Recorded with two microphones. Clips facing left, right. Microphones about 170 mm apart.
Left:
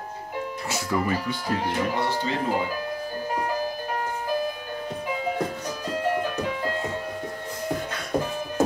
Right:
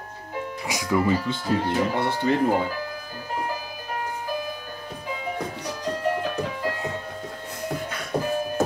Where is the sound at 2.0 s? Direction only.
55° right (ahead or behind).